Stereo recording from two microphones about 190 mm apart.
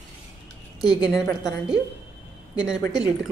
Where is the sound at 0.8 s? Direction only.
20° left (ahead or behind).